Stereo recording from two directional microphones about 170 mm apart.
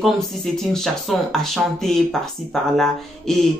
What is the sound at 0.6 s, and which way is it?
Speech, centre (ahead or behind).